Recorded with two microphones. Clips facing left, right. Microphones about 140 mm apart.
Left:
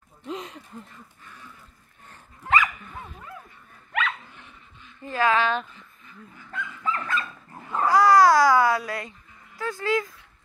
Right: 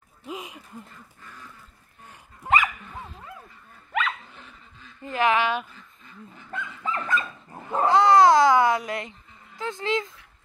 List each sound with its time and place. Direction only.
0.2 s a sound: 10° right (ahead or behind)
2.0 s dog: 15° right (ahead or behind)
5.0 s speech: 20° right (ahead or behind)
6.0 s dog: 25° right (ahead or behind)
9.6 s speech: 20° right (ahead or behind)